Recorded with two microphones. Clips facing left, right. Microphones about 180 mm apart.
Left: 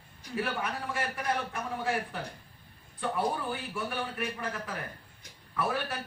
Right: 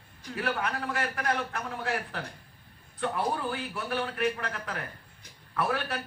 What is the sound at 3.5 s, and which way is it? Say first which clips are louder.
A man's voice: right 2 dB; 70° right (ahead or behind).